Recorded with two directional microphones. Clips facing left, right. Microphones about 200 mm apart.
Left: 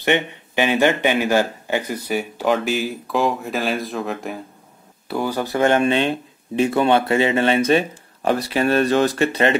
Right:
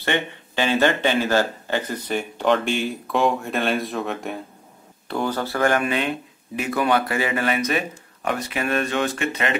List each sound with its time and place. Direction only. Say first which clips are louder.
0.0 s speech: left 4 dB; 15° left (ahead or behind); by 9.6 s 35° left (ahead or behind)